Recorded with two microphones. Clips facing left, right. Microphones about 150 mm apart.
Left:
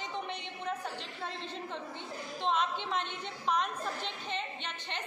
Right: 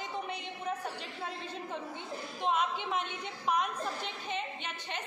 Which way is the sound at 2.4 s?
10° right (ahead or behind).